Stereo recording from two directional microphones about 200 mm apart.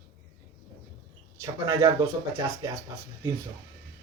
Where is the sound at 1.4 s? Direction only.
15° right (ahead or behind).